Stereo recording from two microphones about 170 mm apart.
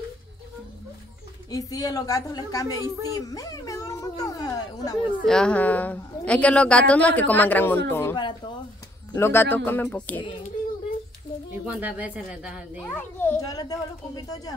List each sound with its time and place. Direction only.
1.5 s a woman's voice: 20° left (ahead or behind)
5.2 s a woman's voice: 5° left (ahead or behind)
11.6 s speech: 10° right (ahead or behind)
12.9 s a woman's voice: 15° left (ahead or behind)